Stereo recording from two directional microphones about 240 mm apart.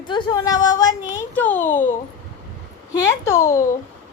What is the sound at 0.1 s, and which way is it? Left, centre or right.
A woman's voice, centre.